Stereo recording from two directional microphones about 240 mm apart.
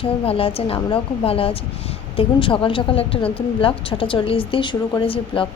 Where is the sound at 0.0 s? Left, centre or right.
Left.